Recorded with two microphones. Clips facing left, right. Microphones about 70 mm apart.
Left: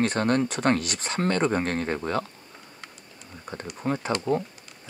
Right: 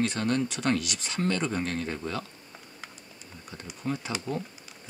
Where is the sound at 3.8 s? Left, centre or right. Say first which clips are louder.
Left 5 dB; left.